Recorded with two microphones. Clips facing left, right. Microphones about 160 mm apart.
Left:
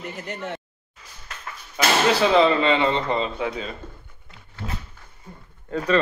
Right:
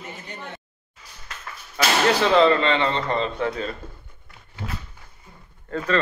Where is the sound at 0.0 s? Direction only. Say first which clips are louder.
Left 5 dB; 80° left.